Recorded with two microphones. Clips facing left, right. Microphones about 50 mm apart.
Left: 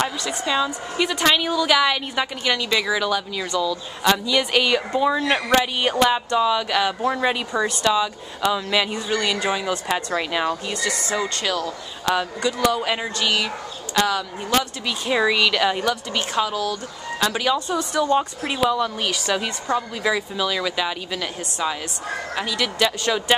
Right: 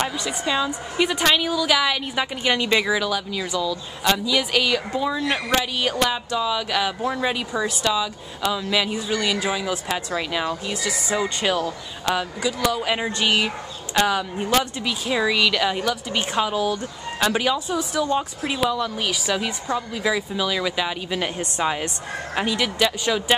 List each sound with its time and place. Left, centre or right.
0.5 s speech: centre
1.2 s speech: centre
2.4 s speech: centre
2.9 s speech: centre
6.5 s speech: centre
10.5 s speech: centre
12.2 s speech: centre
13.2 s speech: centre
15.0 s speech: centre
15.9 s speech: centre
17.2 s speech: centre
18.5 s speech: centre
22.3 s speech: right
22.8 s speech: centre